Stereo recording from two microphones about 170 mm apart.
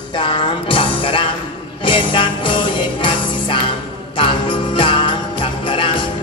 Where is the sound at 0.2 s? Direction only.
30° left (ahead or behind).